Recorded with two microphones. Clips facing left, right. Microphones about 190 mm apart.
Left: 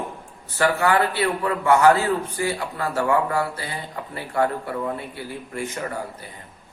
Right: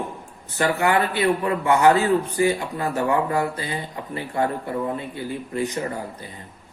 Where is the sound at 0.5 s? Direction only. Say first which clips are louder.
Left 1 dB; 20° right (ahead or behind).